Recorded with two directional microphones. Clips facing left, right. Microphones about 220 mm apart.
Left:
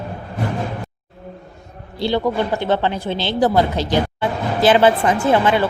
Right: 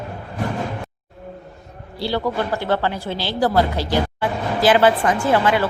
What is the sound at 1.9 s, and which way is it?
A woman's voice, 20° left (ahead or behind).